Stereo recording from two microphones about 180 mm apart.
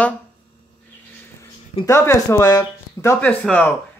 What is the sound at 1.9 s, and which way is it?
Speech, 15° left (ahead or behind).